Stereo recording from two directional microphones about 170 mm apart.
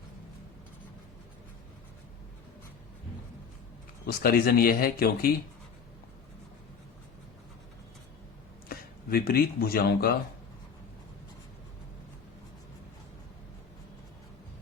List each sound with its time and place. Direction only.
4.0 s speech: 65° left (ahead or behind)
9.0 s speech: 60° left (ahead or behind)